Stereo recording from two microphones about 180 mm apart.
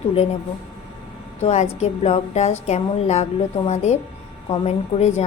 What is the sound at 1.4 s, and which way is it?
A woman's voice, 35° left (ahead or behind).